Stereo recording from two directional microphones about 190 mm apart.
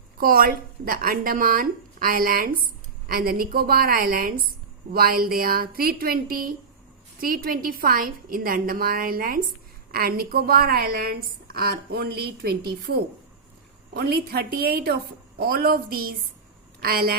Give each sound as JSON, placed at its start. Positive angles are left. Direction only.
{"t": 0.2, "sound": "a woman's voice", "side_deg": -50}